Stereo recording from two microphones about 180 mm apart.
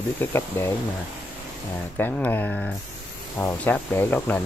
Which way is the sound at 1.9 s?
10° left (ahead or behind).